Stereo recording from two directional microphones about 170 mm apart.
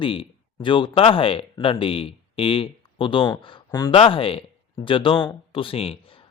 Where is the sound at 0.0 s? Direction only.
30° left (ahead or behind).